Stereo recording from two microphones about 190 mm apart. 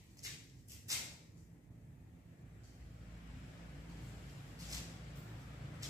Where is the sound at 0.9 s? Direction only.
20° right (ahead or behind).